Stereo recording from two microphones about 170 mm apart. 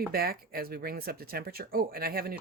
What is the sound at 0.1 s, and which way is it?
Speech, 60° right (ahead or behind).